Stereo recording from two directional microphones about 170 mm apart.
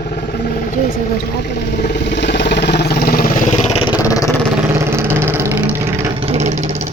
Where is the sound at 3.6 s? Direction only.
30° left (ahead or behind).